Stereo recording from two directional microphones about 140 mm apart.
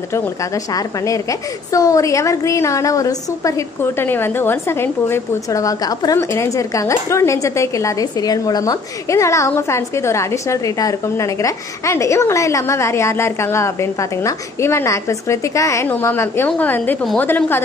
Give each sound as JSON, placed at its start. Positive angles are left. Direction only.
{"t": 0.7, "sound": "a woman's voice", "side_deg": 20}